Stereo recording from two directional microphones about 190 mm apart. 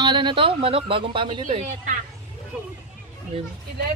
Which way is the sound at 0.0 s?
25° right (ahead or behind).